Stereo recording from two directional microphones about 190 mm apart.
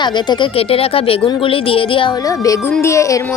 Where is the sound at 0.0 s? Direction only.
25° left (ahead or behind).